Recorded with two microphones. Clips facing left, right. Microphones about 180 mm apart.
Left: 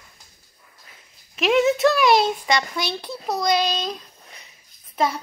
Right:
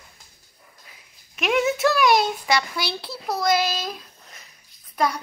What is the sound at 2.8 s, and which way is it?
Speech, 20° left (ahead or behind).